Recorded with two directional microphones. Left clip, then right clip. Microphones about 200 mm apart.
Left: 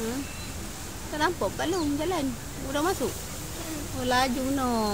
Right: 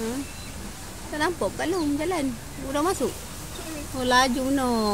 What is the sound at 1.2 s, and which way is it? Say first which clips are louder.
Speech: right 1 dB; 25° right (ahead or behind).